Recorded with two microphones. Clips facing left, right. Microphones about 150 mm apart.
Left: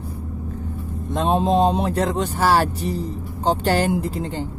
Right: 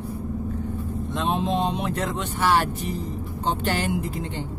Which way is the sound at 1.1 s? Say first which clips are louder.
Left 6 dB; 40° left (ahead or behind).